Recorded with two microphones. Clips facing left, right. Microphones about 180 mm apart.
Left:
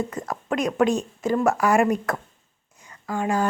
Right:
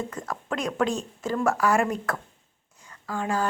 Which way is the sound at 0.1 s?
10° left (ahead or behind).